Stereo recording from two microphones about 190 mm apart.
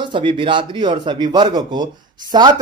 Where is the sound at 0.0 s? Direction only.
25° right (ahead or behind).